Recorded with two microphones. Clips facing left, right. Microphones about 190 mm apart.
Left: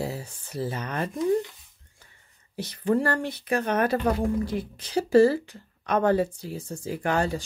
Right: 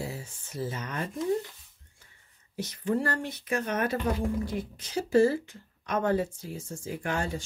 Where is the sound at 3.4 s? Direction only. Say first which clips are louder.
Left 5 dB; 65° left (ahead or behind).